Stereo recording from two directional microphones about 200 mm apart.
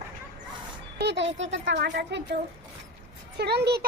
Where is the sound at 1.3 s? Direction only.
65° right (ahead or behind).